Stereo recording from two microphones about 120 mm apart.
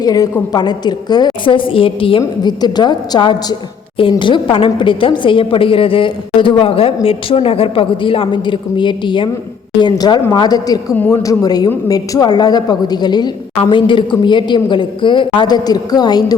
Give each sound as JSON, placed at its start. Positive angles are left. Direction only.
{"t": 0.0, "sound": "a woman's voice", "side_deg": 30}